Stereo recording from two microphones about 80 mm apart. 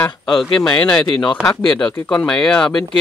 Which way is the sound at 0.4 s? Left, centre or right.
Centre.